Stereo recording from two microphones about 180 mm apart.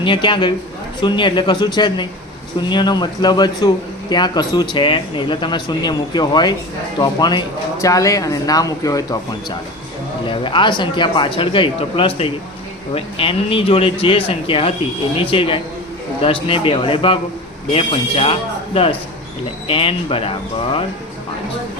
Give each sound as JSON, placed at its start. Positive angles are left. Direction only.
{"t": 0.0, "sound": "speech", "side_deg": 25}
{"t": 10.2, "sound": "speech", "side_deg": 25}